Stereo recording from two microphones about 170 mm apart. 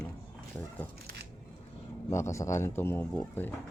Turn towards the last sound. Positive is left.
turn(degrees=10)  # may be behind; listen again after turning